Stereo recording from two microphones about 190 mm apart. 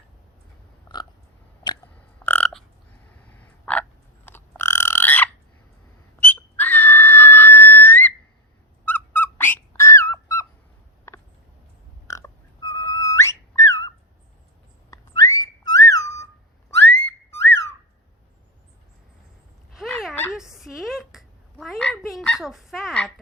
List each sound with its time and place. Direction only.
2.1 s burping: 10° left (ahead or behind)
3.2 s frog: 5° left (ahead or behind)
6.1 s whistle: 10° left (ahead or behind)
8.8 s a sound: 10° left (ahead or behind)
14.8 s whistling: 20° left (ahead or behind)
17.1 s whistle: 10° left (ahead or behind)
20.3 s a sound: centre (ahead or behind)